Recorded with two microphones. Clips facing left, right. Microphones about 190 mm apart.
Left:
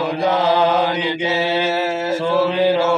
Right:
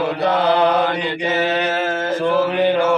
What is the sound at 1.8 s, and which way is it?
Mantra, 10° left (ahead or behind).